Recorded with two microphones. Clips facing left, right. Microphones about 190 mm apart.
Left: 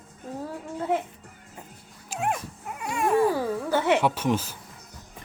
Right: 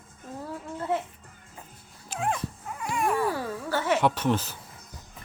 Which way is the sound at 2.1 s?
10° left (ahead or behind).